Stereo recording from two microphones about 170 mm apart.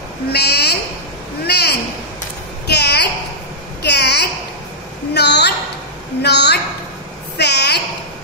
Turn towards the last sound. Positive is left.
turn(degrees=80)